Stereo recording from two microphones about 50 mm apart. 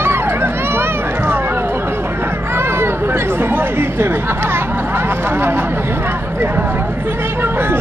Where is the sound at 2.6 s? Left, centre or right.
Right.